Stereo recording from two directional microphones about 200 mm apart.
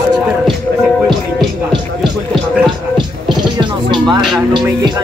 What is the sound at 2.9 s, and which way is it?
Scratching, 25° right (ahead or behind).